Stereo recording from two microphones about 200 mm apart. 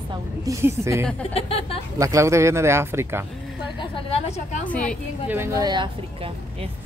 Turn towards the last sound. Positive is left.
turn(degrees=-20)  # may be behind; listen again after turning